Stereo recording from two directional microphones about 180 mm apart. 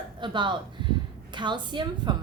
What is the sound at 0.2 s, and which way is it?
A woman's voice, 25° right (ahead or behind).